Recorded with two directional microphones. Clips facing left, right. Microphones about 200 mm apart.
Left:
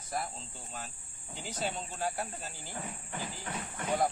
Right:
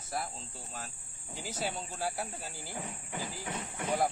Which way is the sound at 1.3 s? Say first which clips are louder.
Even; 10° right (ahead or behind).